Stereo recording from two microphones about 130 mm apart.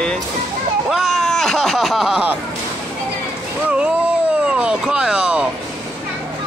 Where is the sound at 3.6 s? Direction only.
10° right (ahead or behind).